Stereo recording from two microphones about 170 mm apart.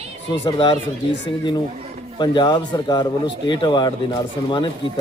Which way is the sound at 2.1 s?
25° left (ahead or behind).